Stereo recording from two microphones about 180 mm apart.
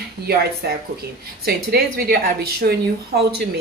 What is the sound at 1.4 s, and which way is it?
A woman's voice, 60° right (ahead or behind).